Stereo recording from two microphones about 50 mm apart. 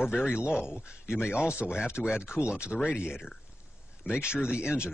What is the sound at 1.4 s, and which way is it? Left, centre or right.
Speech, right.